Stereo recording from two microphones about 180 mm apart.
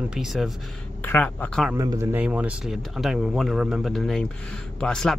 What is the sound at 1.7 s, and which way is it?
Speech, 15° right (ahead or behind).